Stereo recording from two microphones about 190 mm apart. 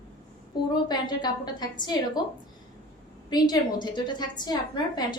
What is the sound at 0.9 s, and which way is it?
A woman's voice, 20° left (ahead or behind).